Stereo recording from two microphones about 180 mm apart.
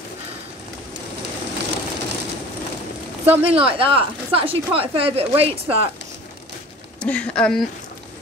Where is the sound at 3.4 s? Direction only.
30° right (ahead or behind).